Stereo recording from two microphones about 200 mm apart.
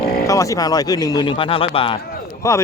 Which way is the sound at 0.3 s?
15° left (ahead or behind).